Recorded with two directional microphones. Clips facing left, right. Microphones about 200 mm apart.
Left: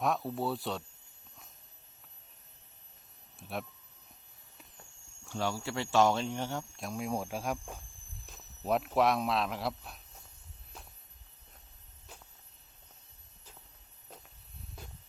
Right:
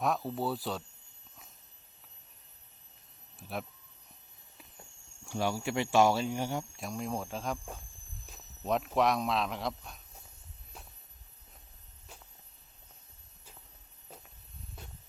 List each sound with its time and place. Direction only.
0.0 s a man's voice: centre (ahead or behind)
3.3 s speech: centre (ahead or behind)
4.8 s speech: 15° right (ahead or behind)
6.7 s speech: centre (ahead or behind)
8.3 s a sound: 5° left (ahead or behind)
9.0 s a man's voice: centre (ahead or behind)